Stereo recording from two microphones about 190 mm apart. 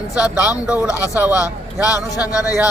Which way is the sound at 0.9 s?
15° left (ahead or behind).